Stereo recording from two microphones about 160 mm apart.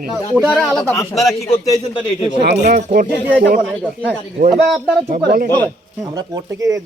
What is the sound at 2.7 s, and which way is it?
Speech, 60° right (ahead or behind).